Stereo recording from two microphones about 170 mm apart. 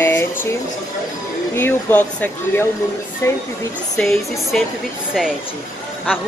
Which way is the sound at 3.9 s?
Centre (ahead or behind).